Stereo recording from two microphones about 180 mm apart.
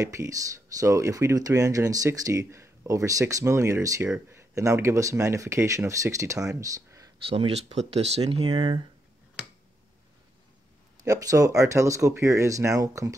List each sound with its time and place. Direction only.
0.0 s speech: 20° right (ahead or behind)
7.2 s speech: 35° right (ahead or behind)
11.1 s speech: 20° right (ahead or behind)